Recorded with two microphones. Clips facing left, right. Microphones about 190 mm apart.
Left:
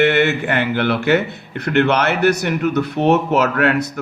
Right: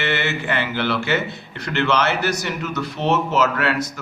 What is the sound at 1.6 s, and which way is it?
A man's voice, 60° left (ahead or behind).